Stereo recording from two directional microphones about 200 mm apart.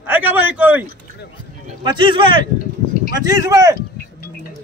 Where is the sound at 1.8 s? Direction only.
25° right (ahead or behind).